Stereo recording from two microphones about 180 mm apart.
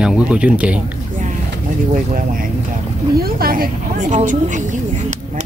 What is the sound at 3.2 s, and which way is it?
Speech, 55° right (ahead or behind).